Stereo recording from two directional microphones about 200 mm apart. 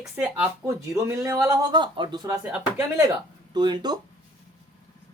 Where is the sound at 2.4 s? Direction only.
5° right (ahead or behind).